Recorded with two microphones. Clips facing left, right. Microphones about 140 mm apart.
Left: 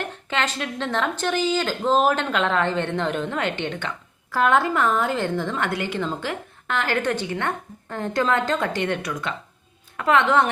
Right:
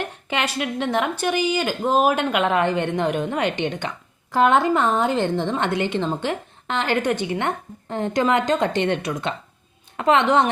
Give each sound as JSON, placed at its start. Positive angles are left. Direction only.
{"t": 0.0, "sound": "a woman's voice", "side_deg": -15}